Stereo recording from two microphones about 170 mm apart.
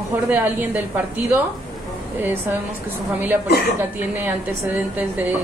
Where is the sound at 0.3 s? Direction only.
10° right (ahead or behind).